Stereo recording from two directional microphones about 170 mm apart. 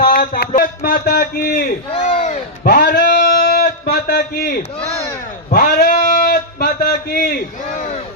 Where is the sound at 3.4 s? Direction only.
45° left (ahead or behind).